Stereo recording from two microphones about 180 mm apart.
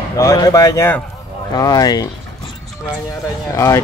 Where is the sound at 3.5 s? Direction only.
15° left (ahead or behind).